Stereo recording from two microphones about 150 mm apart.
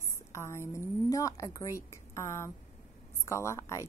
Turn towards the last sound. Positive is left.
turn(degrees=20)  # may be behind; listen again after turning